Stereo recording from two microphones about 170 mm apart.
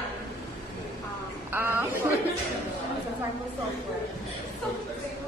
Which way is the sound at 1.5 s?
15° right (ahead or behind).